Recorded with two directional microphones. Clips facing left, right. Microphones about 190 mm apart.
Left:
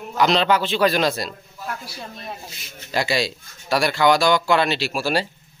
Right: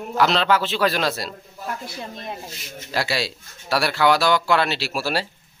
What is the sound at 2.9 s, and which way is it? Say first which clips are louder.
Speech: left 3 dB; 5° right (ahead or behind).